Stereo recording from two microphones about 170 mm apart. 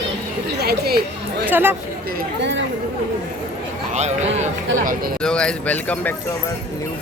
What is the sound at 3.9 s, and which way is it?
Speech, 40° right (ahead or behind).